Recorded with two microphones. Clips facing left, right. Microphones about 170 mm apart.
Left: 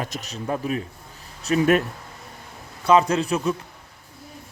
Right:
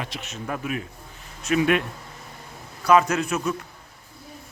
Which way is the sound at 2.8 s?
25° left (ahead or behind).